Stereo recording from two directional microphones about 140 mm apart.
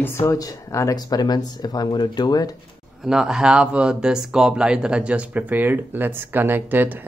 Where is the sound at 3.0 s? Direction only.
5° right (ahead or behind).